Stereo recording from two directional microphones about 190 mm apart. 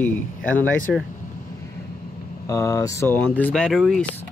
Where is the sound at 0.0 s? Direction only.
10° left (ahead or behind).